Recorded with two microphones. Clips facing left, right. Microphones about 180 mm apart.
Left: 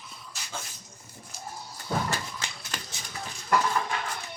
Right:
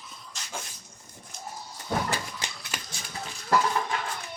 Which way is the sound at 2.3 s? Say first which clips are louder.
Right 1 dB; 15° right (ahead or behind).